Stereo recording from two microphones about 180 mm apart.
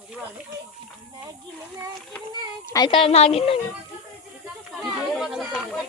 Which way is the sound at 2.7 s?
25° left (ahead or behind).